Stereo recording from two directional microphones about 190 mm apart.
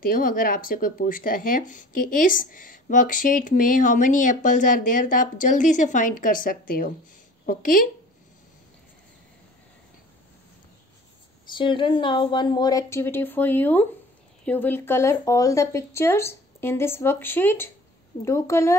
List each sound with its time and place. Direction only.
0.0 s speech: 45° left (ahead or behind)
11.4 s speech: 25° left (ahead or behind)